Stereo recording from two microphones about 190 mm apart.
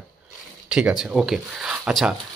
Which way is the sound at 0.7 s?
5° right (ahead or behind).